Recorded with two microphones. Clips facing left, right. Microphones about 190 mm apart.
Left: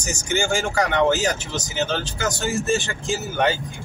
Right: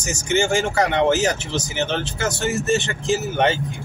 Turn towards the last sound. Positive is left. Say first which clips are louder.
# right 3 dB
turn(degrees=-20)  # may be behind; listen again after turning